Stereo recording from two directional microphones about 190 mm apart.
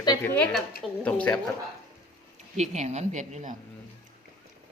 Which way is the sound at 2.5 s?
35° right (ahead or behind).